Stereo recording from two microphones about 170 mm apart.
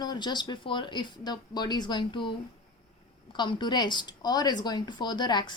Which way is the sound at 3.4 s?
25° left (ahead or behind).